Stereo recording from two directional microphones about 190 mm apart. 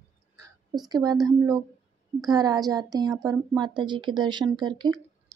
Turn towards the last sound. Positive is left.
turn(degrees=-20)  # may be behind; listen again after turning